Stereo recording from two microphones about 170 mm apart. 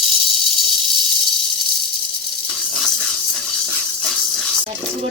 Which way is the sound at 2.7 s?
Centre (ahead or behind).